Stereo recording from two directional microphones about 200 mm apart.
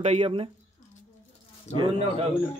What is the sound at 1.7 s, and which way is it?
Speech, 25° right (ahead or behind).